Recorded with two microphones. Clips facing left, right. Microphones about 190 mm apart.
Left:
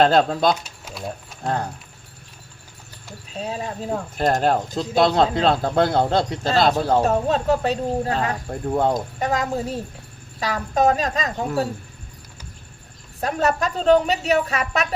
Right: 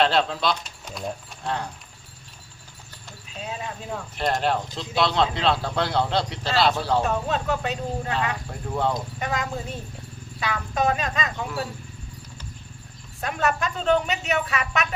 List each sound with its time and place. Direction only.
0.0 s speech: 45° left (ahead or behind)
0.6 s speech: 5° left (ahead or behind)
1.5 s speech: 45° left (ahead or behind)
3.3 s a woman's voice: 35° left (ahead or behind)
13.1 s a woman's voice: 35° left (ahead or behind)